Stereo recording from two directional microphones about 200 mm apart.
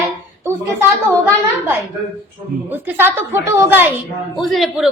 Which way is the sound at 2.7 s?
10° right (ahead or behind).